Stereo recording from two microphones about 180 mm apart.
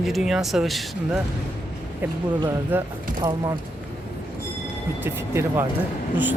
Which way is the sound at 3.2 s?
25° right (ahead or behind).